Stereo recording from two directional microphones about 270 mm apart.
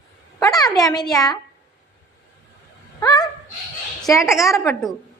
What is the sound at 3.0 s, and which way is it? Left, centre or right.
Speech, centre.